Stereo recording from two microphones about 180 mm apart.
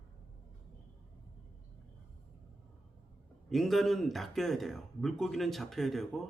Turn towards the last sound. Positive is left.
turn(degrees=0)  # may be behind; listen again after turning